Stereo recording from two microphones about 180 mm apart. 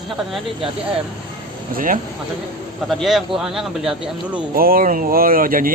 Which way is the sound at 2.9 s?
Centre (ahead or behind).